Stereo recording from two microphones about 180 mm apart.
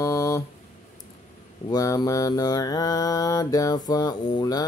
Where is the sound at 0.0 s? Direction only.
15° left (ahead or behind).